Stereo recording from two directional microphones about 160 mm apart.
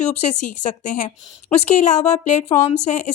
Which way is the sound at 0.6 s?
50° left (ahead or behind).